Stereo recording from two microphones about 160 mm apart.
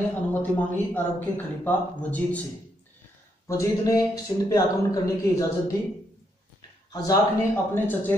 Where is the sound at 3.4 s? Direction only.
20° left (ahead or behind).